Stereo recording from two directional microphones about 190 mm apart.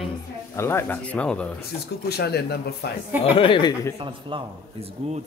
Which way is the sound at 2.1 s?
60° left (ahead or behind).